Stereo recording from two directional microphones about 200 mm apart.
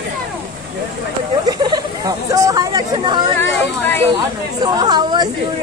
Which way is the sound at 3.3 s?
10° left (ahead or behind).